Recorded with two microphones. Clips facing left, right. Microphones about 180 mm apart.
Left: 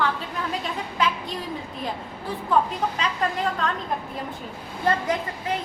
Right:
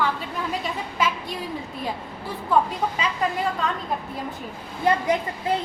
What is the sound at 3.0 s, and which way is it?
Speech, 5° right (ahead or behind).